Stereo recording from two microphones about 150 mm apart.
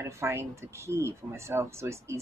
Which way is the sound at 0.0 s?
20° right (ahead or behind).